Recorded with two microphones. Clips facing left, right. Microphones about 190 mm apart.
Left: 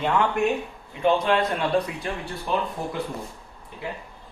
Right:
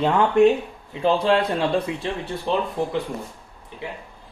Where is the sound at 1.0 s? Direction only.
30° right (ahead or behind).